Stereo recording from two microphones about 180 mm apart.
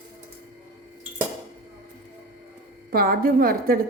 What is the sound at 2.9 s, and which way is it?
Speech, 55° right (ahead or behind).